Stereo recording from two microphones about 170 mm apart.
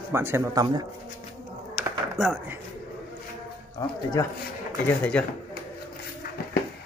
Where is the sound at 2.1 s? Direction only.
5° right (ahead or behind).